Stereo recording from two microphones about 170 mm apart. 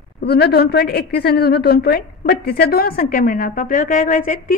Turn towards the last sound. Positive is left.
turn(degrees=50)  # may be behind; listen again after turning